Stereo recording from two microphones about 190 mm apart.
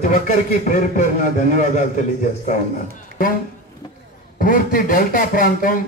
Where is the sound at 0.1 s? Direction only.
40° left (ahead or behind).